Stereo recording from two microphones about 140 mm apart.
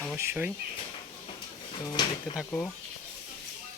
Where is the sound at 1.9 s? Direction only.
35° left (ahead or behind).